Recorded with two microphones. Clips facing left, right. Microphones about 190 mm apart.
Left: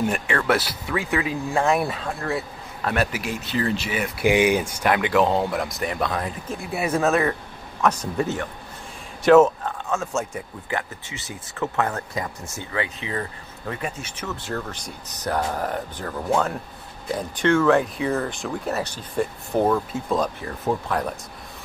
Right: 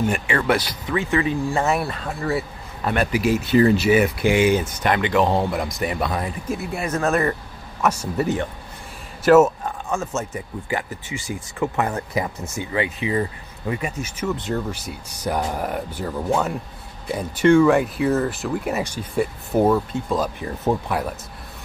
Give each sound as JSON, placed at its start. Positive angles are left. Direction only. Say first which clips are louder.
{"t": 0.1, "sound": "speech", "louder": "right 1 dB", "side_deg": 0}
{"t": 3.4, "sound": "speech", "louder": "right 9 dB", "side_deg": -10}
{"t": 4.2, "sound": "speech", "louder": "right 1 dB", "side_deg": 15}
{"t": 20.3, "sound": "speech", "louder": "right 3 dB", "side_deg": -20}